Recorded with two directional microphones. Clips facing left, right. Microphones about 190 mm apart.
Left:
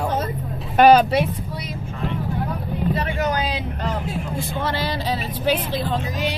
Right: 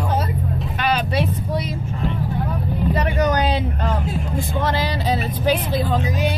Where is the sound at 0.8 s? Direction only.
40° left (ahead or behind).